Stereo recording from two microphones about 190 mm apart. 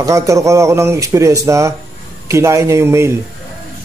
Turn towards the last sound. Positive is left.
turn(degrees=-15)  # may be behind; listen again after turning